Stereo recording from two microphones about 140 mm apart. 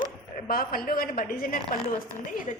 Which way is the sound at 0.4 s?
90° left.